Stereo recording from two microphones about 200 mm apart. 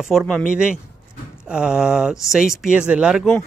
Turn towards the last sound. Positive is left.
turn(degrees=-5)  # may be behind; listen again after turning